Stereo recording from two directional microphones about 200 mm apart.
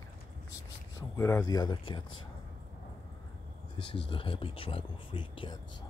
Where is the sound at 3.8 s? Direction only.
25° left (ahead or behind).